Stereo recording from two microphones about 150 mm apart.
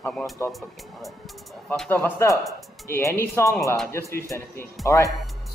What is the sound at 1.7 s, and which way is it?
Speech, 10° left (ahead or behind).